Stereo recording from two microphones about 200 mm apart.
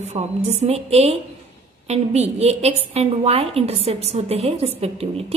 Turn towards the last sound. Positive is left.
turn(degrees=-30)  # may be behind; listen again after turning